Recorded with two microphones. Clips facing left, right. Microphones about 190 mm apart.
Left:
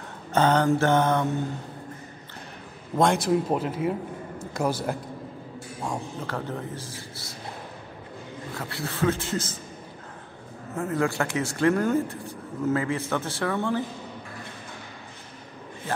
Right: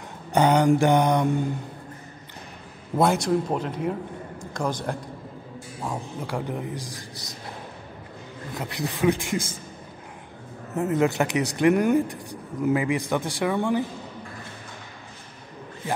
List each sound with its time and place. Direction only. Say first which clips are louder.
0.3 s speech: right 2 dB; 15° right (ahead or behind)
3.0 s a man's voice: even; centre (ahead or behind)
5.9 s speech: right 1 dB; 10° right (ahead or behind)
8.5 s speech: right 2 dB; 15° right (ahead or behind)
10.7 s speech: right 4 dB; 20° right (ahead or behind)